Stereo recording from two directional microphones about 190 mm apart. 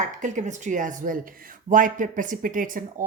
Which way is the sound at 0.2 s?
40° right (ahead or behind).